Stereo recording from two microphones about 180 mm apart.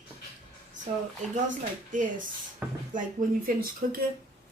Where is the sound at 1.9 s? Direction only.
45° right (ahead or behind).